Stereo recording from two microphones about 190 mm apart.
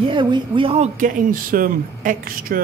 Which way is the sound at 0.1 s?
25° right (ahead or behind).